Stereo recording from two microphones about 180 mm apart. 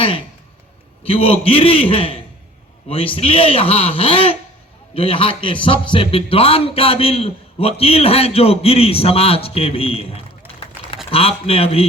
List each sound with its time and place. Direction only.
1.0 s a man's voice: 30° left (ahead or behind)
3.2 s a man's voice: 30° left (ahead or behind)